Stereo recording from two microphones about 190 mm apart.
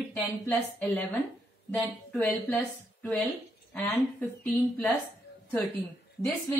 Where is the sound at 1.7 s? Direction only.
5° left (ahead or behind).